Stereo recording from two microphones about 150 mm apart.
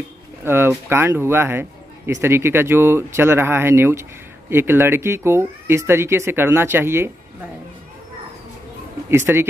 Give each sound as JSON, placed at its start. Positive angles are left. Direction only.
{"t": 0.5, "sound": "speech", "side_deg": -15}
{"t": 9.1, "sound": "speech", "side_deg": -15}